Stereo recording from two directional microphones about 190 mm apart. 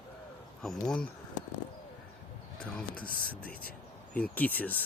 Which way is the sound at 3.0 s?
50° left (ahead or behind).